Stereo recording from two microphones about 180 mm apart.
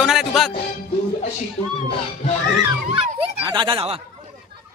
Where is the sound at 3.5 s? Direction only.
25° right (ahead or behind).